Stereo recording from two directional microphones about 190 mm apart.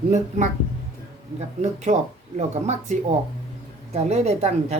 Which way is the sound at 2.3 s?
35° right (ahead or behind).